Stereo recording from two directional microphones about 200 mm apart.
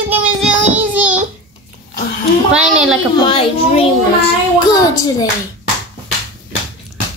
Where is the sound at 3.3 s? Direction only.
25° left (ahead or behind).